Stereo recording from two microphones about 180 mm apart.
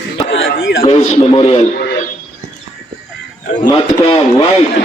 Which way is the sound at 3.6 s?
25° left (ahead or behind).